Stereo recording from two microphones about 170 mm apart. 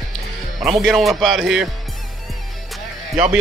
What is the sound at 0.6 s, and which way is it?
Speech, centre (ahead or behind).